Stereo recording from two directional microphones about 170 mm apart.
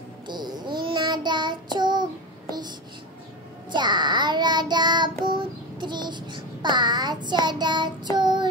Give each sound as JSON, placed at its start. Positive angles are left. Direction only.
{"t": 0.3, "sound": "child singing", "side_deg": -25}
{"t": 3.7, "sound": "child singing", "side_deg": -25}